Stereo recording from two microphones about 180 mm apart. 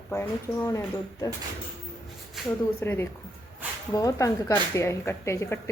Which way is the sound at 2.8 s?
10° left (ahead or behind).